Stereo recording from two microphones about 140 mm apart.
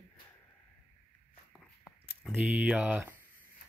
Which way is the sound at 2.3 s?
15° right (ahead or behind).